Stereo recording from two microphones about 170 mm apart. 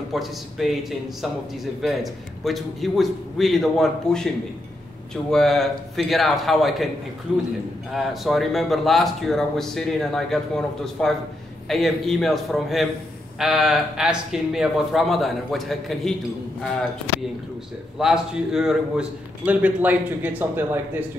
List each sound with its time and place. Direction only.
0.1 s speech: centre (ahead or behind)
17.9 s a man's voice: 5° right (ahead or behind)